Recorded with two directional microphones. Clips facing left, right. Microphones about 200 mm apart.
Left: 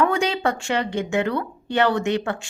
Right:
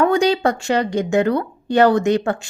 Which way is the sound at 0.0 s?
35° right (ahead or behind).